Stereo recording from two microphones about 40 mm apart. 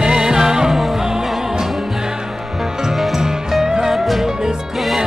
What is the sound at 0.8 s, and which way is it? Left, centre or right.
Music, centre.